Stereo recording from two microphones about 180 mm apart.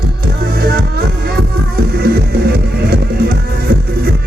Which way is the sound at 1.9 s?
60° right (ahead or behind).